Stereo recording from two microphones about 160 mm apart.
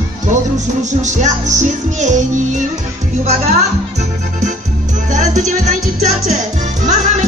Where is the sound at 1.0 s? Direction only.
50° right (ahead or behind).